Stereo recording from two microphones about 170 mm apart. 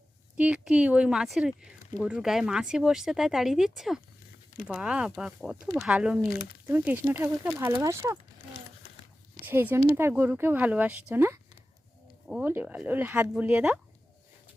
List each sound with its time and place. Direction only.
0.3 s speech: 5° right (ahead or behind)
8.8 s a sound: 70° left (ahead or behind)
9.5 s speech: 15° right (ahead or behind)